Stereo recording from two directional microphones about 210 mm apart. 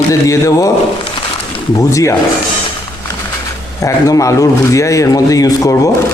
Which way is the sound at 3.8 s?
15° left (ahead or behind).